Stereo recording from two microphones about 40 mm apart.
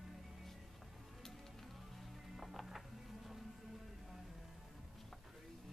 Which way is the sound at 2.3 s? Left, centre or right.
Centre.